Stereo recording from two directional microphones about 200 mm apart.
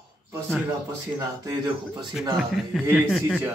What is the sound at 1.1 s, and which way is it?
Speech, 20° right (ahead or behind).